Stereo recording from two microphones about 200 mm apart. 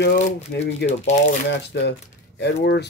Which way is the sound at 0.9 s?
35° left (ahead or behind).